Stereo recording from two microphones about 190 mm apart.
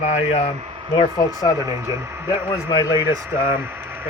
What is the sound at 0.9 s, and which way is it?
Speech, 25° left (ahead or behind).